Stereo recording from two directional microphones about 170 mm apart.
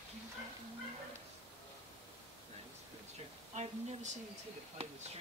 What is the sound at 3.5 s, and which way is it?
Speech, 40° right (ahead or behind).